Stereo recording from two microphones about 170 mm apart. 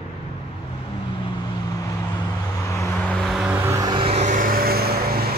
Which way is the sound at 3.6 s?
20° right (ahead or behind).